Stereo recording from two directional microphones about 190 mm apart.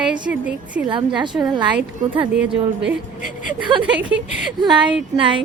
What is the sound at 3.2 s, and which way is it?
Speech, 45° left (ahead or behind).